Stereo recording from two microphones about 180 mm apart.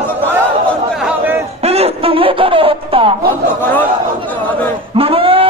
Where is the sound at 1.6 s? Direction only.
35° right (ahead or behind).